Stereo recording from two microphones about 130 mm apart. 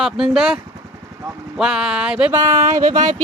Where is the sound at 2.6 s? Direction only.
70° right (ahead or behind).